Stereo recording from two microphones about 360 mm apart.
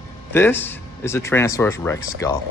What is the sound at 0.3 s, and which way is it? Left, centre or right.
Speech, centre.